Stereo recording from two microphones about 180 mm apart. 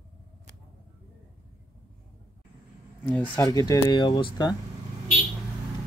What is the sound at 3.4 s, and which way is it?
Speech, 20° left (ahead or behind).